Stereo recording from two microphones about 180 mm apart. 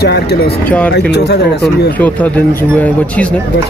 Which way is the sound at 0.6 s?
10° left (ahead or behind).